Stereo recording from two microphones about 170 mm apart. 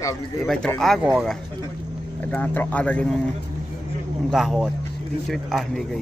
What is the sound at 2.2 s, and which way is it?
Speech, 10° left (ahead or behind).